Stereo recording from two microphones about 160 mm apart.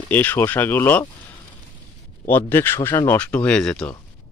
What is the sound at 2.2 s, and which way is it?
Speech, 15° left (ahead or behind).